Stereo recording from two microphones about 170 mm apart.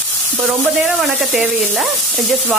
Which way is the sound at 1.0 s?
5° right (ahead or behind).